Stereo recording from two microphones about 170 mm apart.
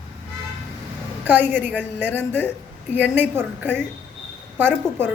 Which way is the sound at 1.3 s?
10° right (ahead or behind).